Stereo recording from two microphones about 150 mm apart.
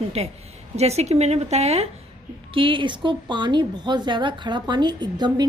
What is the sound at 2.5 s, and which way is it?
A woman's voice, 35° right (ahead or behind).